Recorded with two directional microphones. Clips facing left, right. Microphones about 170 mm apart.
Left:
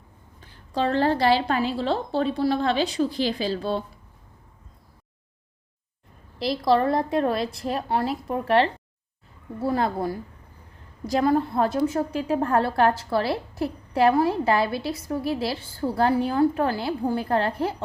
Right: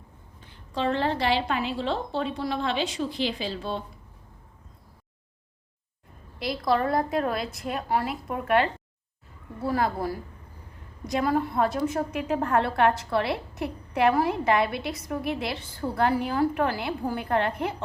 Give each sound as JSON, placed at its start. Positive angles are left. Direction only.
{"t": 0.7, "sound": "a woman's voice", "side_deg": 40}
{"t": 6.4, "sound": "a woman's voice", "side_deg": 30}